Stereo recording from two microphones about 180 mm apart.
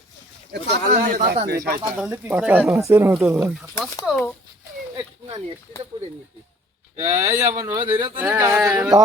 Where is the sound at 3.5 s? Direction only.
Centre (ahead or behind).